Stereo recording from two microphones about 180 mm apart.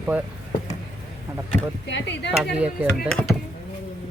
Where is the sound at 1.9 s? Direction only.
80° left.